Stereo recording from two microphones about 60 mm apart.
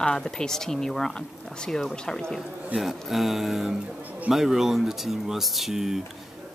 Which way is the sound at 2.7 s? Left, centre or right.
Centre.